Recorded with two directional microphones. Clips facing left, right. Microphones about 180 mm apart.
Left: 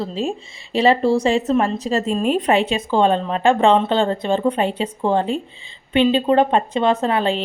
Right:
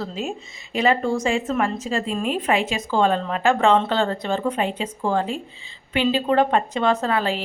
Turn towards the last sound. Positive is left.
turn(degrees=25)  # may be behind; listen again after turning